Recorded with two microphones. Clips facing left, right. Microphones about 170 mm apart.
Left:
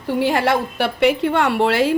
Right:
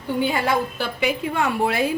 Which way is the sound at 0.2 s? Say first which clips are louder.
Left 4 dB; 90° left.